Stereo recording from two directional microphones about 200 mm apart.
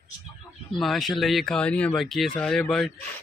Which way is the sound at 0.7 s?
Centre (ahead or behind).